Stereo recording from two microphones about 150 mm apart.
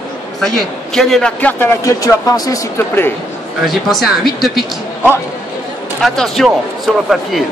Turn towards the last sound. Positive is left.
turn(degrees=0)  # may be behind; listen again after turning